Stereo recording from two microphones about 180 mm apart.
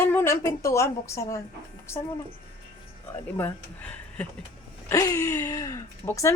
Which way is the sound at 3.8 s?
10° left (ahead or behind).